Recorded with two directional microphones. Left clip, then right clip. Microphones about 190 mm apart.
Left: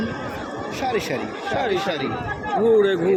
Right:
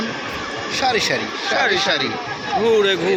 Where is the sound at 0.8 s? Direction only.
10° left (ahead or behind).